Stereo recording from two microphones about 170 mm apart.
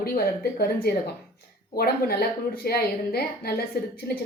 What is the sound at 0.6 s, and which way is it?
A woman's voice, 65° left (ahead or behind).